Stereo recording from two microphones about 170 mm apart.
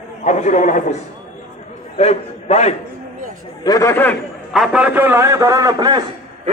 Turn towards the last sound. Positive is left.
turn(degrees=-20)  # may be behind; listen again after turning